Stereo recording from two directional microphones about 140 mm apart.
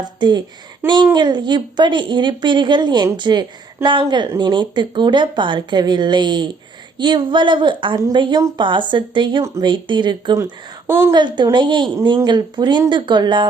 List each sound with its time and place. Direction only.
0.2 s speech: 30° right (ahead or behind)
7.9 s a woman's voice: 25° right (ahead or behind)
10.3 s speech: 15° right (ahead or behind)
11.1 s speech: 35° right (ahead or behind)